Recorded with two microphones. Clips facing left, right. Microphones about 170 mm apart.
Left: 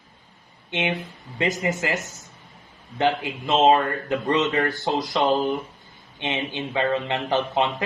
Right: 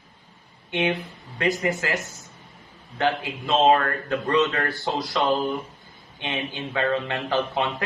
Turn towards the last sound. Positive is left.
turn(degrees=20)  # may be behind; listen again after turning